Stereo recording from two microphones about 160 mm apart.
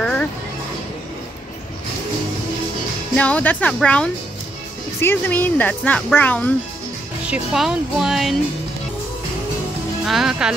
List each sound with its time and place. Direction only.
0.0 s music: 5° left (ahead or behind)
3.2 s speech: 10° left (ahead or behind)
7.2 s speech: 5° right (ahead or behind)
10.0 s speech: centre (ahead or behind)